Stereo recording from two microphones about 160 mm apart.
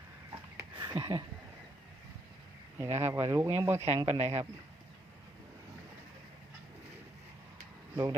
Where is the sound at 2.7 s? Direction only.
15° right (ahead or behind).